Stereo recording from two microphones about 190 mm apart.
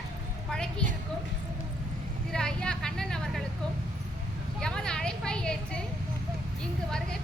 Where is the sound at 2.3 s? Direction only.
5° left (ahead or behind).